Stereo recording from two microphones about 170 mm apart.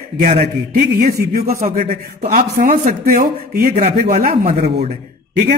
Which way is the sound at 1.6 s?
50° right (ahead or behind).